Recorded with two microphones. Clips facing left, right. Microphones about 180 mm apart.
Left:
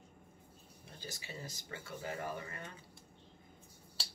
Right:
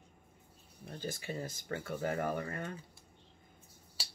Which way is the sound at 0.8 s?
55° right (ahead or behind).